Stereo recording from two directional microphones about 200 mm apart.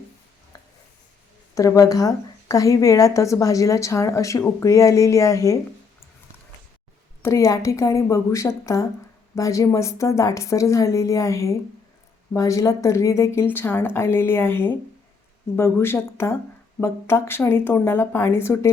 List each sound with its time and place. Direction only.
0.5 s a sound: 20° left (ahead or behind)
1.5 s a woman's voice: 15° left (ahead or behind)
7.2 s a woman's voice: 15° left (ahead or behind)